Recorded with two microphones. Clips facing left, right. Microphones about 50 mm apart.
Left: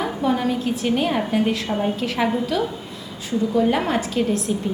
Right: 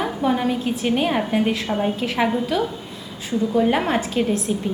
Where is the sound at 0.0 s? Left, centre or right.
Centre.